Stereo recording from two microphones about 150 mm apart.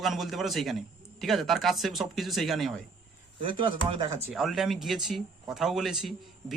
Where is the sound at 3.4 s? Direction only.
35° right (ahead or behind).